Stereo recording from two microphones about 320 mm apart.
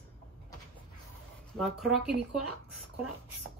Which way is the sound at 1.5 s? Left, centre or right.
Centre.